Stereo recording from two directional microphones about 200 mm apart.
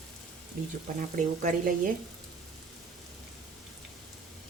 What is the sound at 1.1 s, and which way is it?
Speech, 40° right (ahead or behind).